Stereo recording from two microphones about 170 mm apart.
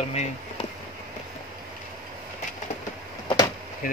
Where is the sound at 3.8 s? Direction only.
55° left (ahead or behind).